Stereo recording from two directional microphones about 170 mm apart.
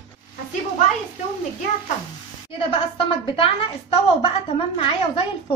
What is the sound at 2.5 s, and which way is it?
A woman's voice, 30° left (ahead or behind).